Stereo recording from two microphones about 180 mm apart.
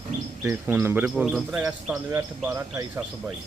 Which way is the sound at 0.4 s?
15° right (ahead or behind).